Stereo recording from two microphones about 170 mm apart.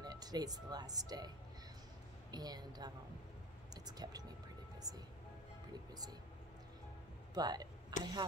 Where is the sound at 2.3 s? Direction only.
25° right (ahead or behind).